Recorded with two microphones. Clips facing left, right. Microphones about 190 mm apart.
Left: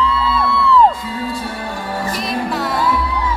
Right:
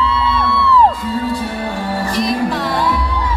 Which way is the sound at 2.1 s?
Centre (ahead or behind).